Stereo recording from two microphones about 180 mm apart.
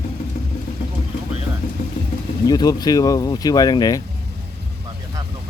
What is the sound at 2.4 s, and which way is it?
Speech, 20° left (ahead or behind).